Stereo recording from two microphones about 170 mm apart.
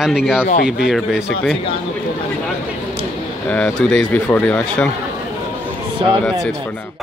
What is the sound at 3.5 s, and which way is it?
Speech, 5° left (ahead or behind).